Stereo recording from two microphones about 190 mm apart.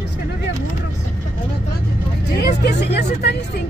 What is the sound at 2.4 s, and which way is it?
Vehicle, 60° left (ahead or behind).